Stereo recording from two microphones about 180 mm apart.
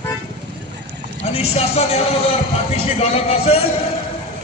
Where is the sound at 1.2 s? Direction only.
35° left (ahead or behind).